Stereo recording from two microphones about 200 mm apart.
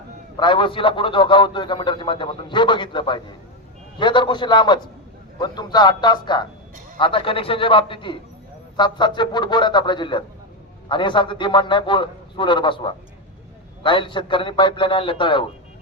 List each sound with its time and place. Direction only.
0.3 s a man's voice: 25° left (ahead or behind)